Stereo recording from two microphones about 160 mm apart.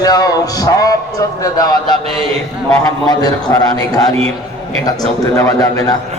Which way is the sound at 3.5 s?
20° left (ahead or behind).